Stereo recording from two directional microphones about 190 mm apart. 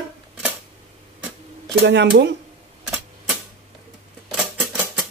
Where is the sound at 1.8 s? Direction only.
65° right (ahead or behind).